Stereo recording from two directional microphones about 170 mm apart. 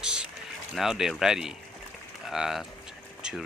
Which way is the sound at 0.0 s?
5° right (ahead or behind).